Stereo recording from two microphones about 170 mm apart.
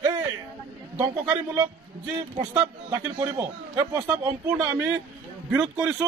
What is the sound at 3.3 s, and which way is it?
Speech, 10° right (ahead or behind).